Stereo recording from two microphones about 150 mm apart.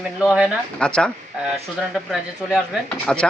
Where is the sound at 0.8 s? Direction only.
5° left (ahead or behind).